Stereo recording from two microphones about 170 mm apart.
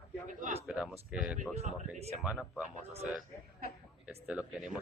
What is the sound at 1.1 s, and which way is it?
Speech, 5° right (ahead or behind).